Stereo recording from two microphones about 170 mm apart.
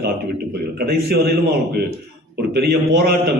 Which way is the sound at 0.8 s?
65° right (ahead or behind).